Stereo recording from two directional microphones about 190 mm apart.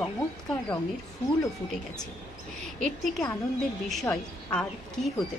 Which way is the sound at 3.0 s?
Centre (ahead or behind).